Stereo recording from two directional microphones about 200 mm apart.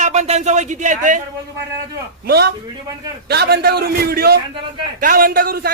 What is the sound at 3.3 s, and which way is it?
A man's voice, 55° right (ahead or behind).